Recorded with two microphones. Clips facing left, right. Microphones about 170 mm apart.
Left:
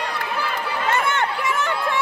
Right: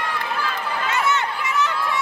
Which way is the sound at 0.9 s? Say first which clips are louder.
Even; 55° left (ahead or behind).